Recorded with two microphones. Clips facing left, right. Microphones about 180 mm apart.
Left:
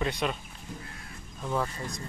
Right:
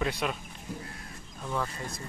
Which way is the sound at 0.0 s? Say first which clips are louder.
Left 1 dB; 5° right (ahead or behind).